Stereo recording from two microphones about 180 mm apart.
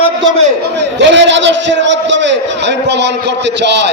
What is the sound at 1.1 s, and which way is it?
A man's voice, 85° right.